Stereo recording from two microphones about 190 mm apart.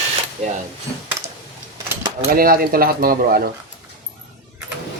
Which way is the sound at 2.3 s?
50° right (ahead or behind).